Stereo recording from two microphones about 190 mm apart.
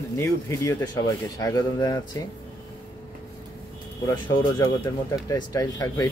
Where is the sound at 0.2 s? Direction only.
15° left (ahead or behind).